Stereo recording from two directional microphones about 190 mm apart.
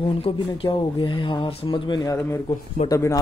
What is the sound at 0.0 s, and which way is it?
A man's voice, 30° left (ahead or behind).